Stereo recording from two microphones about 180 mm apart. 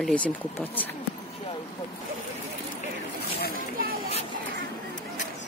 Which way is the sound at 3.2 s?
60° left (ahead or behind).